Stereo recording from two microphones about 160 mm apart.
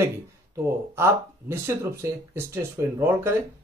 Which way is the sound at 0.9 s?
15° right (ahead or behind).